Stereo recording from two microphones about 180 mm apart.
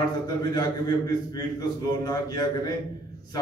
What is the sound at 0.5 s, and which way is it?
A man's voice, 20° left (ahead or behind).